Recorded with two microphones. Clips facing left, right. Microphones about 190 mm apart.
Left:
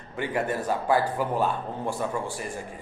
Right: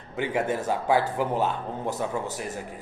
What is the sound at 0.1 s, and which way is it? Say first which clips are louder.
A man's voice: right 1 dB; 20° right (ahead or behind).